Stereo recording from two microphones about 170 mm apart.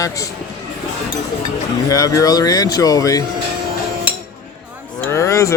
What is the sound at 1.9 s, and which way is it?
Speech, 20° left (ahead or behind).